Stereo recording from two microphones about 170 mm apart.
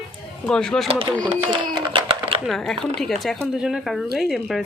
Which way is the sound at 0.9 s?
35° right (ahead or behind).